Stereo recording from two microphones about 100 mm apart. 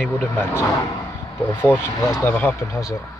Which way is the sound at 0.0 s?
25° left (ahead or behind).